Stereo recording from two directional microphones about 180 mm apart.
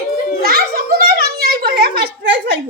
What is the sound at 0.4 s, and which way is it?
Children playing, 60° right (ahead or behind).